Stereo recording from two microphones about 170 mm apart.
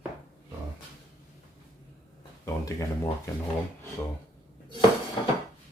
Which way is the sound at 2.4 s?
20° left (ahead or behind).